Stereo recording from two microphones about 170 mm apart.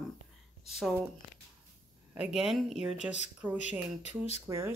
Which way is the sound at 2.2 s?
5° right (ahead or behind).